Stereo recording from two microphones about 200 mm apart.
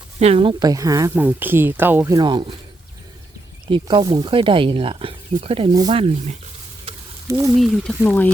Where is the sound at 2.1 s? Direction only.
25° right (ahead or behind).